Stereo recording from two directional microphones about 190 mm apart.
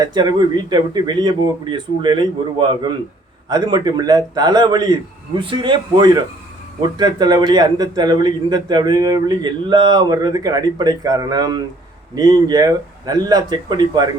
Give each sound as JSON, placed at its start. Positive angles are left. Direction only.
{"t": 0.0, "sound": "a man's voice", "side_deg": -20}